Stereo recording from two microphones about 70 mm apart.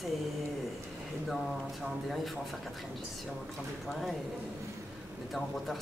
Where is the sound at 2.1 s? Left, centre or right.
Centre.